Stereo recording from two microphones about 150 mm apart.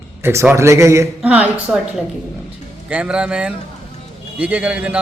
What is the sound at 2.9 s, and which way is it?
Speech, 10° right (ahead or behind).